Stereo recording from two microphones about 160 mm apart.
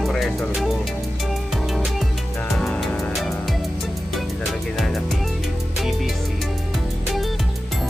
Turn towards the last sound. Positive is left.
turn(degrees=0)  # may be behind; listen again after turning